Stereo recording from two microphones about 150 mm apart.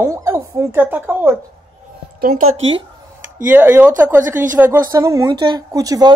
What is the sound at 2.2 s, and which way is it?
Speech, 75° right (ahead or behind).